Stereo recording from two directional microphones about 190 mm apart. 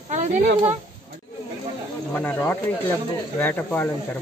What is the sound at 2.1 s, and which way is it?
Speech, 10° left (ahead or behind).